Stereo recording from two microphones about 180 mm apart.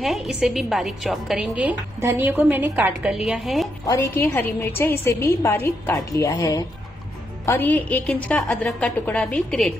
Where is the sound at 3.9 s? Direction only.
15° left (ahead or behind).